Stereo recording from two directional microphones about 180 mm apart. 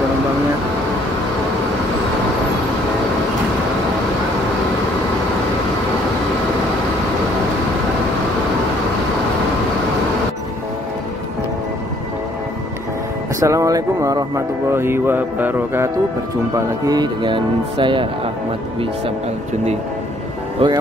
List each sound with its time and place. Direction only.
13.4 s speech: 15° right (ahead or behind)
20.6 s speech: 30° right (ahead or behind)